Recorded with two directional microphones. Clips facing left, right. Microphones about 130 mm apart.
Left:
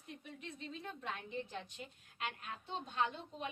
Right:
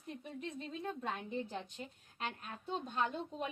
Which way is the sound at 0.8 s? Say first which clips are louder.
Right 6 dB; 35° right (ahead or behind).